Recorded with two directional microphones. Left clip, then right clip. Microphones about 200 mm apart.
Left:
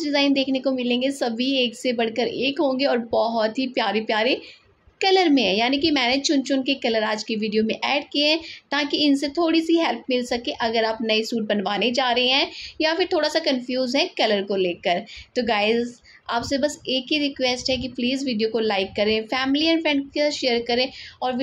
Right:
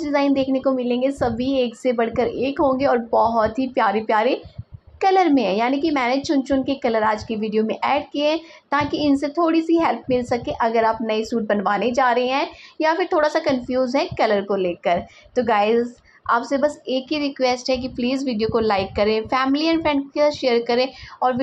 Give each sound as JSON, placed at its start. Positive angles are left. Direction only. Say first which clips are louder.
{"t": 0.0, "sound": "a woman's voice", "louder": "right 1 dB", "side_deg": 5}
{"t": 7.2, "sound": "a woman's voice", "louder": "even", "side_deg": -40}
{"t": 7.5, "sound": "a woman's voice", "louder": "right 3 dB", "side_deg": 5}